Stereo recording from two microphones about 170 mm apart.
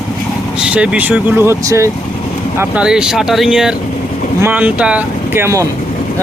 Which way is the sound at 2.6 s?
5° right (ahead or behind).